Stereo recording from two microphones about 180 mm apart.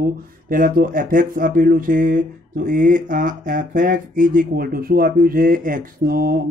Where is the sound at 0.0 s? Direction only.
50° right (ahead or behind).